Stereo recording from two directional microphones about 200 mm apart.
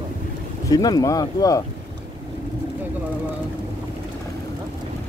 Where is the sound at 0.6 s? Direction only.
20° left (ahead or behind).